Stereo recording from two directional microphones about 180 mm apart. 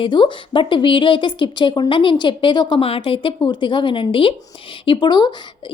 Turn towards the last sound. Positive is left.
turn(degrees=25)  # may be behind; listen again after turning